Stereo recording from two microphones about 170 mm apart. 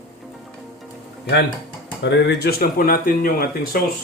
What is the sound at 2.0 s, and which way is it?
Speech, 85° left.